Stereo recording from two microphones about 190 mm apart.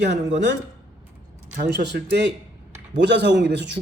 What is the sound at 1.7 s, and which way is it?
Speech, 65° right (ahead or behind).